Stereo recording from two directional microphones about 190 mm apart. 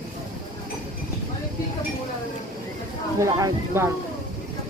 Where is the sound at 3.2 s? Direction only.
15° right (ahead or behind).